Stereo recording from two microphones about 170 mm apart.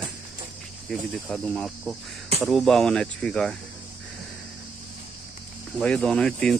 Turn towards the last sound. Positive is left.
turn(degrees=5)  # may be behind; listen again after turning